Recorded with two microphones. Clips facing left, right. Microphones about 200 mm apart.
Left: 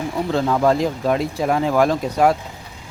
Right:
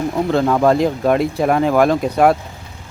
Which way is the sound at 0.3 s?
60° right (ahead or behind).